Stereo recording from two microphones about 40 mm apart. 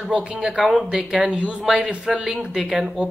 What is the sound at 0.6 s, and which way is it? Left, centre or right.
Speech, centre.